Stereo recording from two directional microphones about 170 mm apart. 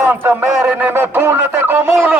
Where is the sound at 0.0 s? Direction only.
10° right (ahead or behind).